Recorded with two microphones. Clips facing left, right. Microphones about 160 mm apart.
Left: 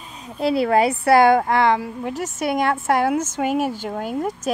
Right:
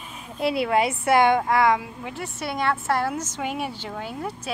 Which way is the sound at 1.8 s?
40° left (ahead or behind).